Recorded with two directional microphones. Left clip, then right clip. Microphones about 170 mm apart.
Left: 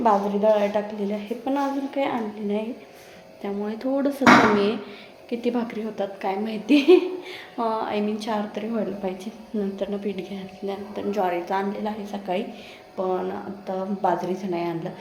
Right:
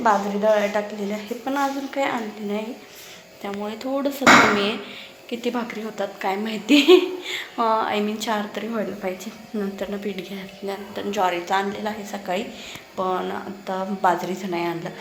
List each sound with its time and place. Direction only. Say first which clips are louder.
0.0 s a woman's voice: even; 20° left (ahead or behind)
5.3 s a woman's voice: even; 20° left (ahead or behind)
6.2 s a woman's voice: right 3 dB; centre (ahead or behind)